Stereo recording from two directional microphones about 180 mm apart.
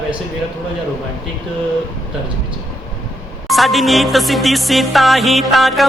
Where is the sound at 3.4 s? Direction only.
Centre (ahead or behind).